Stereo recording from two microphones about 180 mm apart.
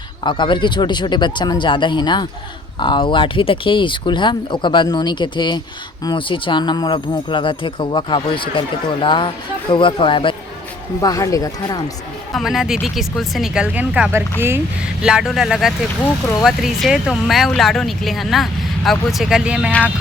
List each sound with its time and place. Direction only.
0.3 s speech: 25° left (ahead or behind)
12.3 s speech: centre (ahead or behind)